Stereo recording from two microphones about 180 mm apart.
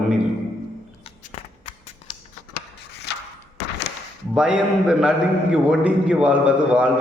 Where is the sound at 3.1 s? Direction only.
70° left (ahead or behind).